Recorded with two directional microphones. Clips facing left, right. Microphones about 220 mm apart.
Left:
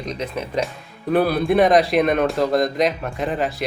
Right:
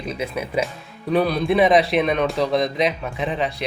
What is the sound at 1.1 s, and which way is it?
Speech, 5° left (ahead or behind).